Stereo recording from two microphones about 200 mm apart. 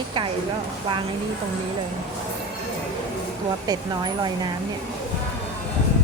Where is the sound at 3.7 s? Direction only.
20° right (ahead or behind).